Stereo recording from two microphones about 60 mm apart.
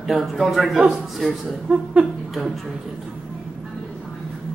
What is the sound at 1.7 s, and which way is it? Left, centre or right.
Speech, centre.